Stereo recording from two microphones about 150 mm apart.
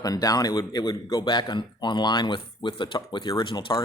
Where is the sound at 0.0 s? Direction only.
25° left (ahead or behind).